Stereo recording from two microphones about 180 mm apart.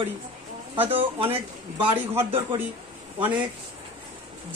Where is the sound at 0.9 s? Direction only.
30° right (ahead or behind).